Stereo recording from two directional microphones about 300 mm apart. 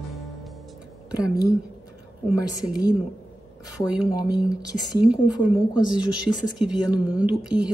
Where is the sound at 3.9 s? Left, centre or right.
Centre.